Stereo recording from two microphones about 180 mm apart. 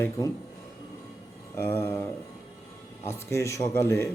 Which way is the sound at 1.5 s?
15° left (ahead or behind).